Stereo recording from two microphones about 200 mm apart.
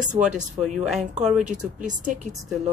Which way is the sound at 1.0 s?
35° right (ahead or behind).